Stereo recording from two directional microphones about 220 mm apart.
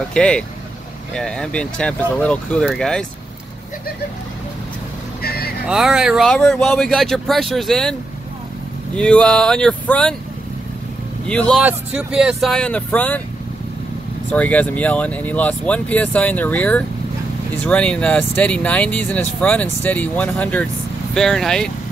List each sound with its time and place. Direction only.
0.1 s speech: 5° left (ahead or behind)
5.2 s vehicle: 45° left (ahead or behind)
5.7 s speech: centre (ahead or behind)
8.9 s speech: 5° left (ahead or behind)
11.2 s speech: 5° left (ahead or behind)
14.3 s speech: 5° left (ahead or behind)